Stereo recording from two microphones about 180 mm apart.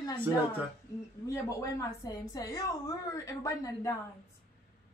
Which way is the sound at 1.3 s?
15° left (ahead or behind).